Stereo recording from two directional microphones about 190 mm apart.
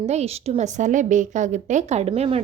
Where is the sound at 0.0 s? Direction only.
35° right (ahead or behind).